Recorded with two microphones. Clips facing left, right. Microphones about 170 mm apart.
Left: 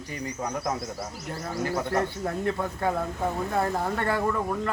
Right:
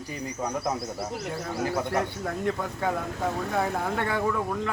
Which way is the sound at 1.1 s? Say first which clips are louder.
Right 2 dB; 65° right (ahead or behind).